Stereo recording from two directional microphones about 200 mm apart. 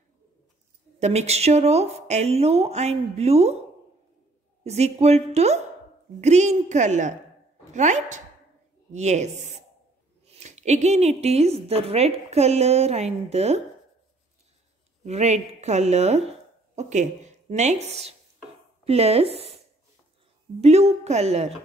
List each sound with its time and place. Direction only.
0.9 s a woman's voice: 35° right (ahead or behind)
4.6 s a woman's voice: 35° right (ahead or behind)
15.0 s a woman's voice: 35° right (ahead or behind)
20.6 s a woman's voice: 30° right (ahead or behind)